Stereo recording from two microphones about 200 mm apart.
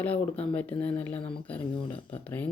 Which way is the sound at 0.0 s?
5° left (ahead or behind).